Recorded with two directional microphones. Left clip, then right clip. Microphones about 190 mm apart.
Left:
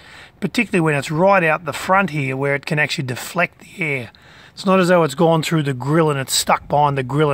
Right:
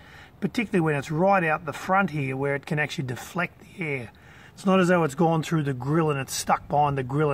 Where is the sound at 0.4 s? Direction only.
45° left (ahead or behind).